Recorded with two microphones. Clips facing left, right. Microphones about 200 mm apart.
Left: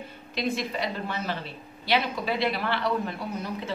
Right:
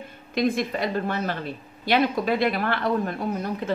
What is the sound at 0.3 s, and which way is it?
A woman's voice, 50° right (ahead or behind).